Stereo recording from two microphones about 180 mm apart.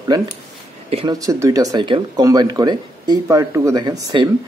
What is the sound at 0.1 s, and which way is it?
Speech, 20° right (ahead or behind).